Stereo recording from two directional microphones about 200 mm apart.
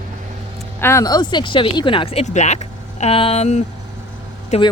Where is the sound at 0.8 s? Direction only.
15° left (ahead or behind); by 3.6 s 30° left (ahead or behind).